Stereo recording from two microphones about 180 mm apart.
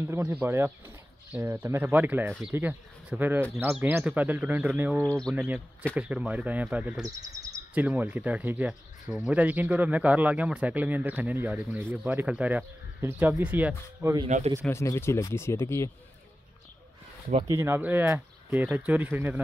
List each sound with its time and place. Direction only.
0.0 s speech: 10° right (ahead or behind)
14.2 s speech: 35° right (ahead or behind)
14.6 s speech: 15° left (ahead or behind)
17.5 s speech: 15° right (ahead or behind)